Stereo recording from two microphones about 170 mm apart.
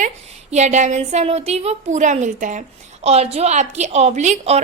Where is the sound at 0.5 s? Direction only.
45° right (ahead or behind).